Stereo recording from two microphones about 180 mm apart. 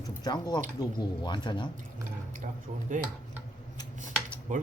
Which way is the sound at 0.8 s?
25° left (ahead or behind).